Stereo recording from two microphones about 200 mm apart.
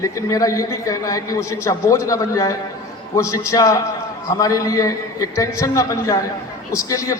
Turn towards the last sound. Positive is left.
turn(degrees=15)  # may be behind; listen again after turning